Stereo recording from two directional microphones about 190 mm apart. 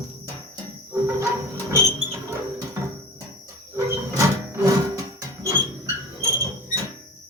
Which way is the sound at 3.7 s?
15° right (ahead or behind).